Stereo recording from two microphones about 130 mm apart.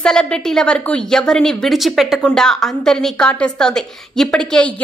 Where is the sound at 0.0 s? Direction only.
5° left (ahead or behind).